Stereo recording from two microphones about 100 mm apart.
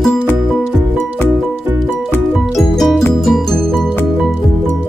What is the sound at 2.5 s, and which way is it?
Music, centre (ahead or behind).